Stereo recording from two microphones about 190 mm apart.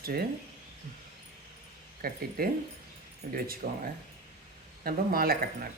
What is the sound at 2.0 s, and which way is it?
Speech, 50° right (ahead or behind).